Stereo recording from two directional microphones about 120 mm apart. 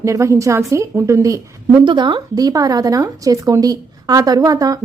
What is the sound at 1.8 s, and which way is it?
A woman's voice, 40° right (ahead or behind).